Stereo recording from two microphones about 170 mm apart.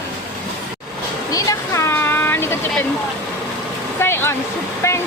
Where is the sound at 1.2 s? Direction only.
20° left (ahead or behind).